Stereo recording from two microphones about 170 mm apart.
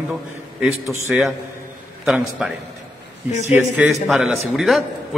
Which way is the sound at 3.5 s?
10° right (ahead or behind).